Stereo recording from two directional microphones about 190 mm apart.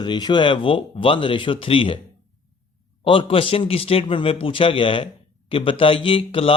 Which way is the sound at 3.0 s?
25° left (ahead or behind).